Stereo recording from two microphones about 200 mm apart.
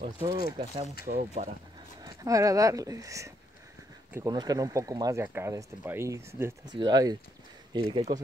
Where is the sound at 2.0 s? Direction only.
20° right (ahead or behind).